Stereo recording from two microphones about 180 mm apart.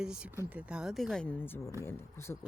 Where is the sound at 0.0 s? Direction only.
5° right (ahead or behind).